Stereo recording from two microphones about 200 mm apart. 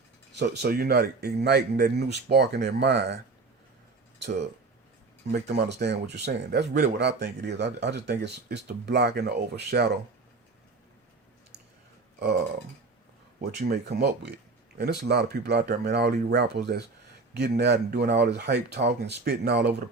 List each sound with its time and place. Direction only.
0.3 s speech: 55° right (ahead or behind)
4.2 s speech: 60° right (ahead or behind)
13.4 s speech: 50° right (ahead or behind)